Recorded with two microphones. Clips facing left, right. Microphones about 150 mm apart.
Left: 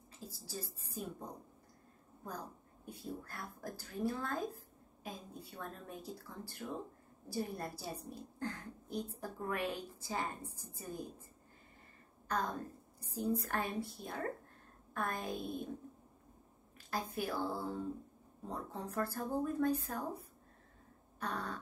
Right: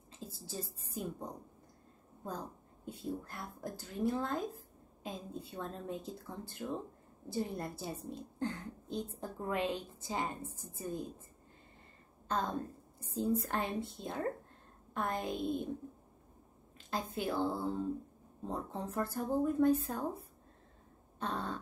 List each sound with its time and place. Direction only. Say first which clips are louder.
0.3 s a sound: right 2 dB; 25° right (ahead or behind)
2.2 s speech: right 3 dB; 20° right (ahead or behind)
12.3 s speech: right 2 dB; 25° right (ahead or behind)
16.7 s a woman's voice: right 2 dB; 20° right (ahead or behind)